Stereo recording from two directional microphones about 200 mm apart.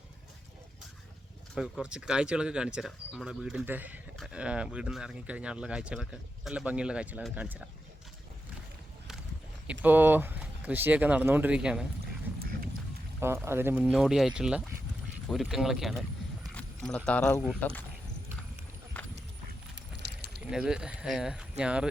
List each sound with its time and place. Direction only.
1.5 s speech: 5° right (ahead or behind)
9.8 s speech: 10° right (ahead or behind)
13.1 s speech: 15° right (ahead or behind); by 17.8 s 5° left (ahead or behind)
19.0 s horse: 5° left (ahead or behind)
20.0 s a sound: 55° right (ahead or behind)
20.4 s speech: 5° right (ahead or behind)